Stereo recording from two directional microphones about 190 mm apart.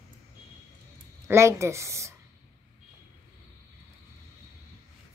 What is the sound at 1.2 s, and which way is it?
Speech, 15° right (ahead or behind).